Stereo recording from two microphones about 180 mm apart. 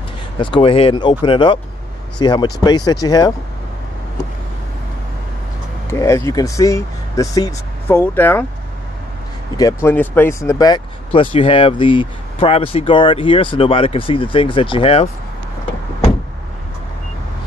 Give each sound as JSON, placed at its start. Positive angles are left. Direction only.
{"t": 0.4, "sound": "speech", "side_deg": 30}
{"t": 5.9, "sound": "speech", "side_deg": 15}
{"t": 9.6, "sound": "speech", "side_deg": 15}